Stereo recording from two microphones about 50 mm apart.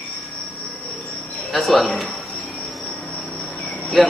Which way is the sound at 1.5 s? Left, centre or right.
Centre.